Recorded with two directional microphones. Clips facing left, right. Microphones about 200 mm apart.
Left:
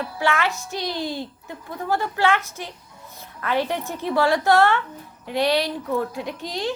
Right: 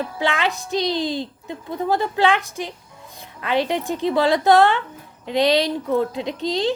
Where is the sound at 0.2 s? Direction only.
15° right (ahead or behind).